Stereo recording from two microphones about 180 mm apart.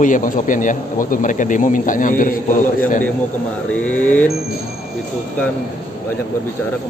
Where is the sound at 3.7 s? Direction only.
10° left (ahead or behind).